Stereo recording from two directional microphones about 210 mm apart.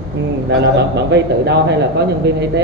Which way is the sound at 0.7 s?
55° right (ahead or behind).